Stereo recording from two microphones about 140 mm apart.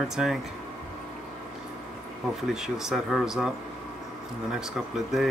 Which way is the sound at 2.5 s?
5° right (ahead or behind).